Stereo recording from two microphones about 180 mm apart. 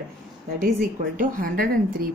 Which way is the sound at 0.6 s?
50° right (ahead or behind).